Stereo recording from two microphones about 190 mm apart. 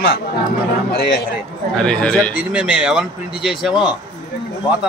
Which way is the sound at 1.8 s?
5° left (ahead or behind).